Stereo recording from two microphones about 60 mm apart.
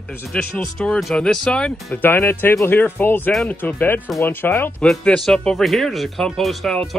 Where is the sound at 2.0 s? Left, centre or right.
Left.